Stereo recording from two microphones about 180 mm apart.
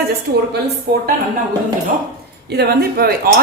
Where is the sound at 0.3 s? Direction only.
65° right (ahead or behind).